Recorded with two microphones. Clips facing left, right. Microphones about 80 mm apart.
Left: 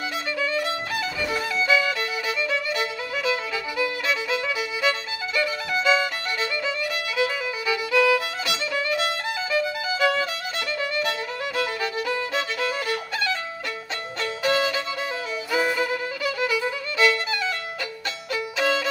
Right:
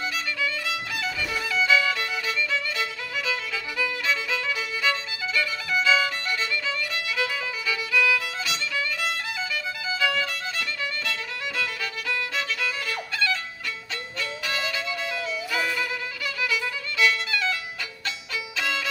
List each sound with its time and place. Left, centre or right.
0.4 s violin: left
1.7 s music: centre
3.7 s violin: centre
7.2 s music: left
9.5 s violin: left
14.4 s violin: left
18.3 s violin: left